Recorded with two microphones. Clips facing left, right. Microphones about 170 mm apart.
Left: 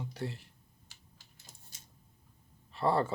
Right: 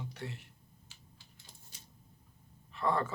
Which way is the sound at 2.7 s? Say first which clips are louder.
Left 3 dB; 35° left (ahead or behind).